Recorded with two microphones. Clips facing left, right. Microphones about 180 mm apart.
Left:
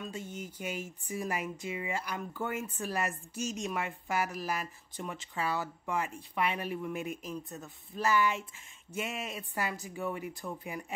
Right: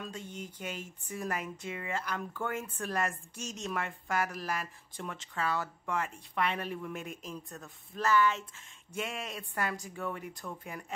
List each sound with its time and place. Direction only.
0.0 s speech: 5° left (ahead or behind)